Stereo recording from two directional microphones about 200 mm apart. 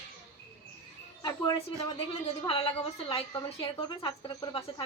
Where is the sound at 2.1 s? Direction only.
30° left (ahead or behind).